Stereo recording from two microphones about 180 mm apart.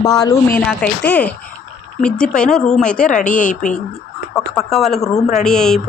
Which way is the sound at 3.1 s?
45° left (ahead or behind).